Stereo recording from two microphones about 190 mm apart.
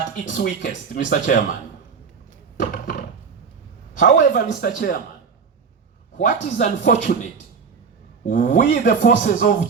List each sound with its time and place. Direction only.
0.3 s speech: 40° left (ahead or behind)
2.6 s a sound: 45° left (ahead or behind)
3.9 s speech: 40° left (ahead or behind)
6.1 s speech: 40° left (ahead or behind)
8.3 s speech: 40° left (ahead or behind)
8.6 s speech: 60° left (ahead or behind); by 9.6 s 45° left (ahead or behind)